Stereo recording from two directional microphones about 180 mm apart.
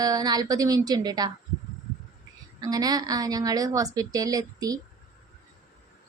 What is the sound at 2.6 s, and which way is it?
A woman's voice, 20° right (ahead or behind).